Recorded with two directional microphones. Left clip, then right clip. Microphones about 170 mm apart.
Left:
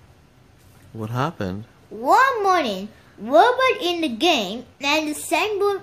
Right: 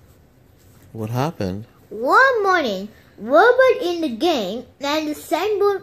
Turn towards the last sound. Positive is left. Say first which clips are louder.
# right 2 dB
turn(degrees=25)  # may be behind; listen again after turning